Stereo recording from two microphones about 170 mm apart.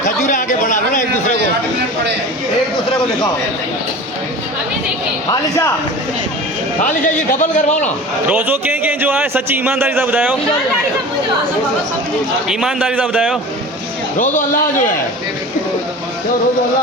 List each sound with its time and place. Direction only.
0.0 s a sound: 50° left (ahead or behind)
5.3 s speech: 15° left (ahead or behind)
7.1 s a man's voice: 45° left (ahead or behind)
8.3 s speech: 10° right (ahead or behind)
12.5 s a man's voice: 5° right (ahead or behind)
14.2 s a man's voice: 50° left (ahead or behind)